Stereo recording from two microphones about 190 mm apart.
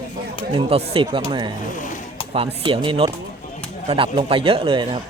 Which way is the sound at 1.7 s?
45° left (ahead or behind).